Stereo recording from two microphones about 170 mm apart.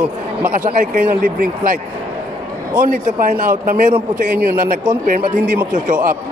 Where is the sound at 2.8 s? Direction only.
55° right (ahead or behind).